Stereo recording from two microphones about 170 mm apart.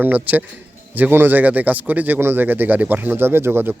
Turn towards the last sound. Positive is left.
turn(degrees=-15)  # may be behind; listen again after turning